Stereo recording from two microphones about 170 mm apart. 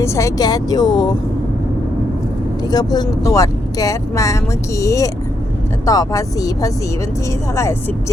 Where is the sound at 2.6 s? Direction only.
25° left (ahead or behind).